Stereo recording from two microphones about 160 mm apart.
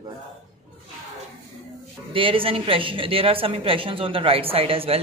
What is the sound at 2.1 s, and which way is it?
A woman's voice, 35° right (ahead or behind).